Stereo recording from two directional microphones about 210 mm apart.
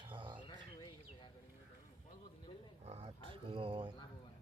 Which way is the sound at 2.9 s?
25° right (ahead or behind).